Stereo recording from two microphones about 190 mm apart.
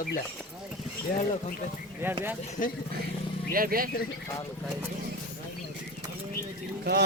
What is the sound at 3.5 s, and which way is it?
Speech, 50° right (ahead or behind).